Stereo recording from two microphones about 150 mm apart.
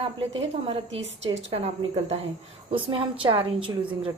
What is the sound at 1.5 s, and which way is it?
A woman's voice, 40° right (ahead or behind).